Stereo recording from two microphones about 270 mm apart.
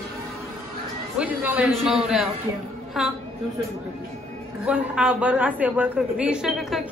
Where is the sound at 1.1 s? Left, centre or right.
Centre.